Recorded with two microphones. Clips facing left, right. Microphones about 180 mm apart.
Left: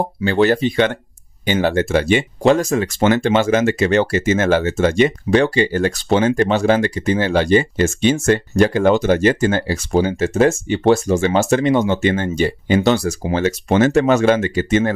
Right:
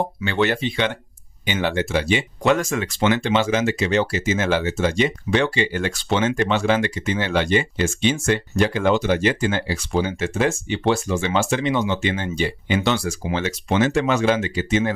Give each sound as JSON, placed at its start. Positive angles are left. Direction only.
{"t": 0.2, "sound": "speech", "side_deg": 35}
{"t": 2.4, "sound": "speech", "side_deg": 35}